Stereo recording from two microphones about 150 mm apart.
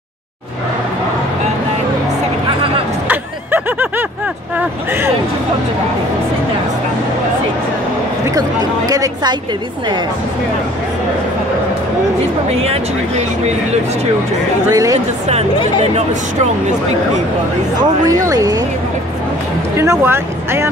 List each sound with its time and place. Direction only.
3.1 s a sound: 15° right (ahead or behind)
4.6 s speech: 15° right (ahead or behind)
8.3 s speech: 25° right (ahead or behind)
14.7 s speech: 25° right (ahead or behind)
15.2 s speech: 45° right (ahead or behind)
17.7 s speech: 25° right (ahead or behind)
19.8 s speech: 15° right (ahead or behind)